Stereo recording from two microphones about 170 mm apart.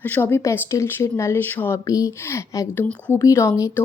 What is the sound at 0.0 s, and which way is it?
Speech, 10° left (ahead or behind).